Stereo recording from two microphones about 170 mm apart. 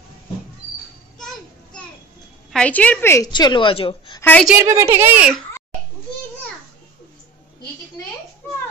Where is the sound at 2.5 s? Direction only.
5° left (ahead or behind).